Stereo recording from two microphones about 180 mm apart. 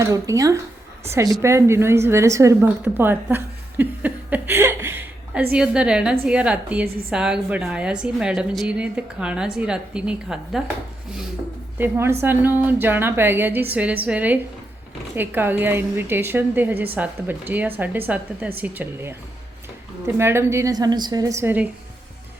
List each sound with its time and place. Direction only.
0.0 s a woman's voice: 15° right (ahead or behind)
11.8 s a woman's voice: 15° right (ahead or behind)
20.1 s a woman's voice: 15° right (ahead or behind)